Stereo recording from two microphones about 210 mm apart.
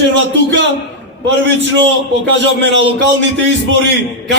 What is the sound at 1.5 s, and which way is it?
Speech, 60° right (ahead or behind).